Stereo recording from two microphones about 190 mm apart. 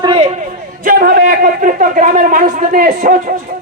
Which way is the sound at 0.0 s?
30° right (ahead or behind).